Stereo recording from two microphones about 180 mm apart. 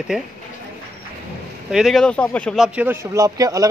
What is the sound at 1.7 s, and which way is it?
Speech, centre (ahead or behind).